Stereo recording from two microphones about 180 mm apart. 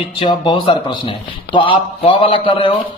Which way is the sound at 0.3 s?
25° left (ahead or behind).